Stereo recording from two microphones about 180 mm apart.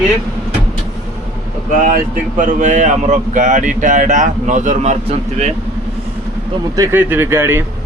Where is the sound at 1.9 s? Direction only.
45° right (ahead or behind).